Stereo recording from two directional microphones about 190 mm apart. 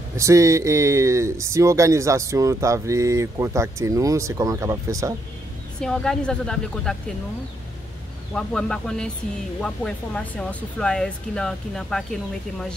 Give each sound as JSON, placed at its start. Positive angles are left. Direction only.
{"t": 0.1, "sound": "speech", "side_deg": -15}
{"t": 5.8, "sound": "speech", "side_deg": 5}
{"t": 8.4, "sound": "speech", "side_deg": 5}